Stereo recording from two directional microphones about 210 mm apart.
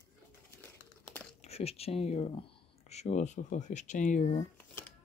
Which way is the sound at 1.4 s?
30° left (ahead or behind).